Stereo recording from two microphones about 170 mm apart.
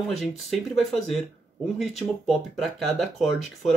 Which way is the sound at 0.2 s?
Centre (ahead or behind).